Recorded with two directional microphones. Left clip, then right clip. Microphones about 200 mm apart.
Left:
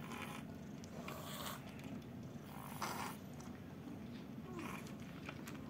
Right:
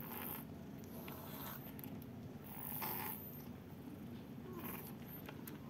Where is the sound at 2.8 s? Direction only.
15° right (ahead or behind).